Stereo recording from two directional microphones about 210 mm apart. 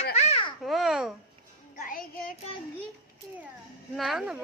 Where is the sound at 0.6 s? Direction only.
Centre (ahead or behind).